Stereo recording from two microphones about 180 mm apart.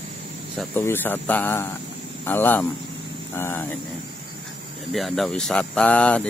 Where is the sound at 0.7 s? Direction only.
10° left (ahead or behind).